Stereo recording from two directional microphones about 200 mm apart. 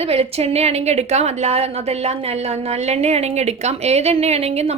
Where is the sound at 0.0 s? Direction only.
30° right (ahead or behind).